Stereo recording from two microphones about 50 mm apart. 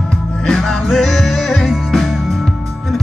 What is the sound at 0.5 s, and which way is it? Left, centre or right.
Music, centre.